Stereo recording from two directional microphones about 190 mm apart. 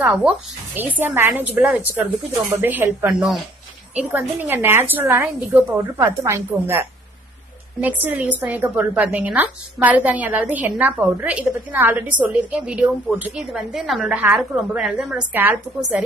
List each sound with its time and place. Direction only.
0.1 s a woman's voice: 5° right (ahead or behind)
15.1 s a woman's voice: 15° right (ahead or behind)